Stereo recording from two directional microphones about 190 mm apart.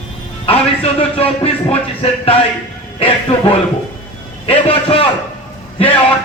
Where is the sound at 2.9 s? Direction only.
30° left (ahead or behind).